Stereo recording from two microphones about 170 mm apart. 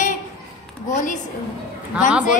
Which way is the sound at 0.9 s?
45° left (ahead or behind).